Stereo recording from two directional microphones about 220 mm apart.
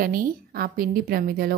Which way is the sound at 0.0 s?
40° right (ahead or behind).